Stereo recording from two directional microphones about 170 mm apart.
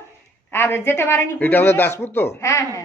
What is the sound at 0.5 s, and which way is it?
Speech, 15° left (ahead or behind).